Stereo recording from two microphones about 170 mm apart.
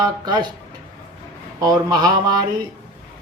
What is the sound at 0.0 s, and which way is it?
Speech, 25° right (ahead or behind).